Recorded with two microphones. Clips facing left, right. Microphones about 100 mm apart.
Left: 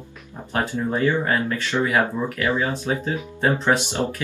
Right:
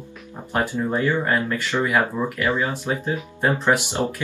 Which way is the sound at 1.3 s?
15° right (ahead or behind).